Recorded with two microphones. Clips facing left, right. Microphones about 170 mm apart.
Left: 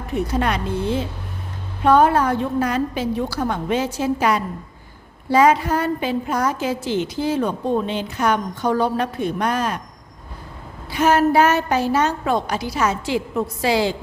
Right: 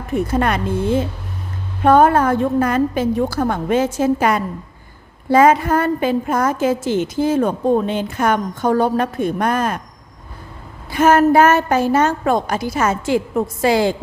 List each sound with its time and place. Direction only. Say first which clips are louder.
0.1 s a woman's voice: right 3 dB; 50° right (ahead or behind)
10.9 s a woman's voice: right 4 dB; 50° right (ahead or behind)